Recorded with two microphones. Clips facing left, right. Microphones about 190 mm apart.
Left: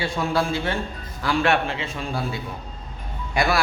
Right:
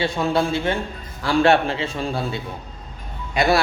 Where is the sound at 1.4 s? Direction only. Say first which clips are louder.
Right 6 dB; 30° right (ahead or behind).